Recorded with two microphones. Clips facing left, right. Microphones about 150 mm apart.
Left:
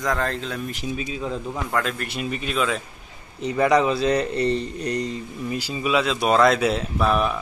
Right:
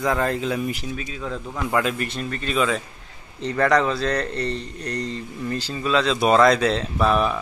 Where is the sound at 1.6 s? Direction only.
5° right (ahead or behind).